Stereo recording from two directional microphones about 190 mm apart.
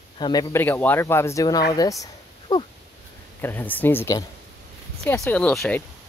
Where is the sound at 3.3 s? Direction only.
10° left (ahead or behind).